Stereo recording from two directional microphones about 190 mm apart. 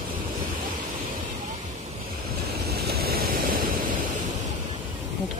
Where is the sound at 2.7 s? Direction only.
55° right (ahead or behind).